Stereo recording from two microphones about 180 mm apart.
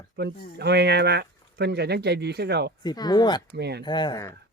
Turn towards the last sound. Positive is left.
turn(degrees=20)  # may be behind; listen again after turning